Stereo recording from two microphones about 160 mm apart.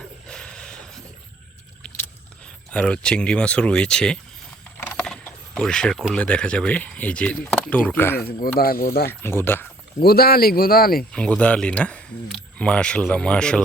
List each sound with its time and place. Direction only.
0.3 s mechanisms: 5° left (ahead or behind)
2.7 s speech: 5° left (ahead or behind)
4.8 s pulleys: 10° left (ahead or behind)
8.4 s speech: 65° left (ahead or behind)
9.0 s speech: 15° left (ahead or behind)
10.0 s speech: 75° left (ahead or behind)
11.1 s speech: 5° left (ahead or behind)